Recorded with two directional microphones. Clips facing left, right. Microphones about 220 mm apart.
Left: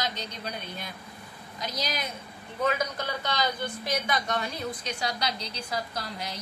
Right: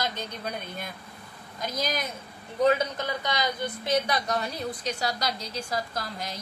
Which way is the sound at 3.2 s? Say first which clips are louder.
Left 1 dB; 15° right (ahead or behind).